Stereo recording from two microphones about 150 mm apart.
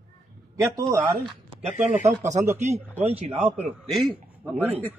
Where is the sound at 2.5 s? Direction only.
50° right (ahead or behind).